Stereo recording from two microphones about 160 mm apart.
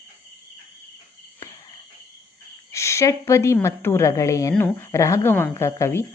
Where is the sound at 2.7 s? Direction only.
15° left (ahead or behind).